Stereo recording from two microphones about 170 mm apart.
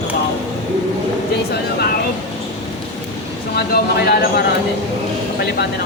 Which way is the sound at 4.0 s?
65° left (ahead or behind).